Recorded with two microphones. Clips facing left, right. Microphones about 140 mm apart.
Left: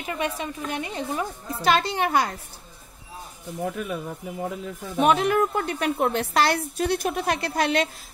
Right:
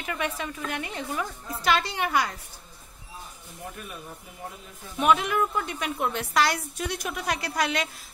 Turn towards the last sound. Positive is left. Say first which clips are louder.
# left 4 dB
turn(degrees=30)  # may be behind; listen again after turning